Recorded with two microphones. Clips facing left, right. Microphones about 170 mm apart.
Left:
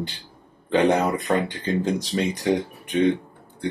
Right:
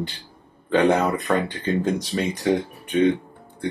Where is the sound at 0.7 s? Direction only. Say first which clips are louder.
Right 1 dB; 20° left (ahead or behind).